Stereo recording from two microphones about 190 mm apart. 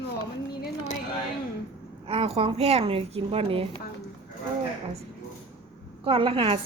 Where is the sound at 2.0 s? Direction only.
30° right (ahead or behind).